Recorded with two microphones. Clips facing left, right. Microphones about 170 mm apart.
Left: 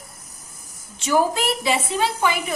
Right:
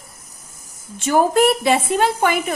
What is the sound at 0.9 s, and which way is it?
A woman's voice, 55° right (ahead or behind).